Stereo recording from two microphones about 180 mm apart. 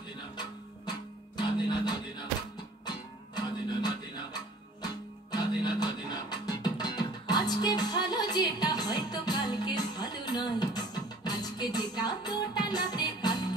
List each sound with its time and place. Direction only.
0.4 s music: 25° left (ahead or behind)
3.3 s music: 25° left (ahead or behind)